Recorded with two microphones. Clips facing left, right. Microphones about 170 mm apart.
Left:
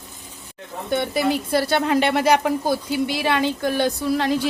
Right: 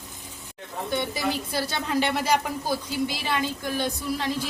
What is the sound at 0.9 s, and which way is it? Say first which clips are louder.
A woman's voice: left 7 dB; 60° left (ahead or behind).